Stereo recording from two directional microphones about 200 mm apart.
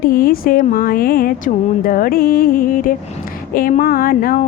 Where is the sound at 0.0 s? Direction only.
45° left (ahead or behind).